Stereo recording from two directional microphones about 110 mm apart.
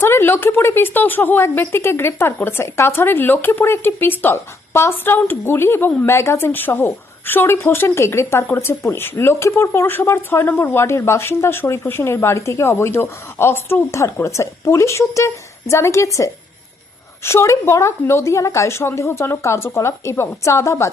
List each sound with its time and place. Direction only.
0.0 s a woman's voice: 20° left (ahead or behind)